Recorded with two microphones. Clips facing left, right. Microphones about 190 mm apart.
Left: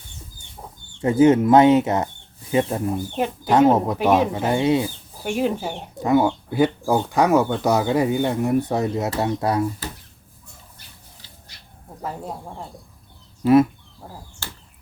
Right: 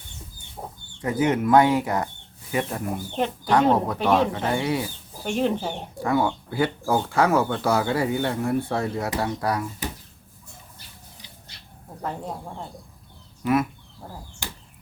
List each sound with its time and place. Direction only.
1.0 s speech: 25° left (ahead or behind)
3.2 s speech: 10° left (ahead or behind)
3.8 s speech: 20° left (ahead or behind)
5.2 s speech: 10° left (ahead or behind)
6.0 s speech: 20° left (ahead or behind)
12.0 s speech: 5° left (ahead or behind)
13.4 s speech: 30° left (ahead or behind)
14.4 s a sound: 15° right (ahead or behind)